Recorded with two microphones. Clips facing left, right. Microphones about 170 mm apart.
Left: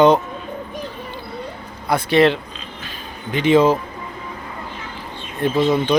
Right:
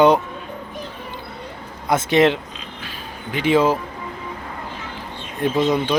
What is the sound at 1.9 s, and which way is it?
Speech, 20° right (ahead or behind).